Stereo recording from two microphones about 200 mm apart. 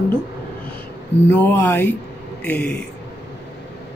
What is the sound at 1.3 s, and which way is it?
Speech, 10° left (ahead or behind).